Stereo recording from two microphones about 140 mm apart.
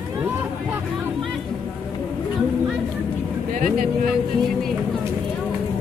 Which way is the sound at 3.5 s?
75° right (ahead or behind).